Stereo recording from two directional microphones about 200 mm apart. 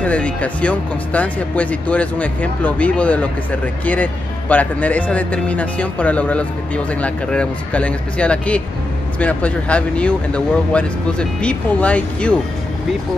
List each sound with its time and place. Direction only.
0.0 s speech: 5° left (ahead or behind)